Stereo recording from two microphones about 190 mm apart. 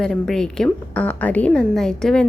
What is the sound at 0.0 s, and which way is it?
A woman's voice, centre (ahead or behind).